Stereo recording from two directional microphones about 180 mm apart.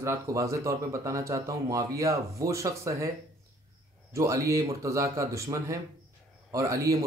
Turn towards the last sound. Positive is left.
turn(degrees=-20)  # may be behind; listen again after turning